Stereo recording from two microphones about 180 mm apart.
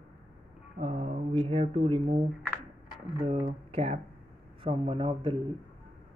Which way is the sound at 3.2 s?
35° right (ahead or behind).